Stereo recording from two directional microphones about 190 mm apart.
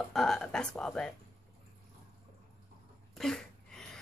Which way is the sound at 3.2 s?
Centre (ahead or behind).